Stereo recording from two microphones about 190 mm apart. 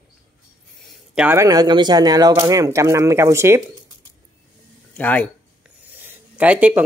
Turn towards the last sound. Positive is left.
turn(degrees=-5)  # may be behind; listen again after turning